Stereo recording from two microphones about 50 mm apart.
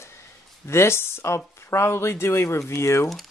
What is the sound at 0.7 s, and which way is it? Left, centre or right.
Speech, left.